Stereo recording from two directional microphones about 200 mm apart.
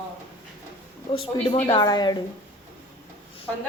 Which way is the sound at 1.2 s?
25° left (ahead or behind).